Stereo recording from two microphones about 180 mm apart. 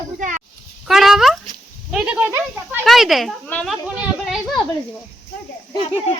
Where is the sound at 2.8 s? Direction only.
Centre (ahead or behind).